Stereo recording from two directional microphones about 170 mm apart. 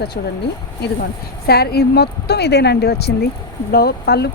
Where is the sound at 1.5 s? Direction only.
65° left (ahead or behind).